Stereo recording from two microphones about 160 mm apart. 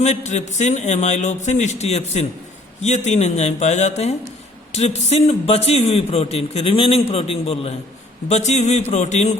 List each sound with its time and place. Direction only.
0.0 s a man's voice: 45° left (ahead or behind)